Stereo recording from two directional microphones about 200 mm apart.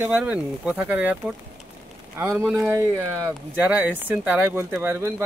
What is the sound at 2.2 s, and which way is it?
Speech, 10° right (ahead or behind).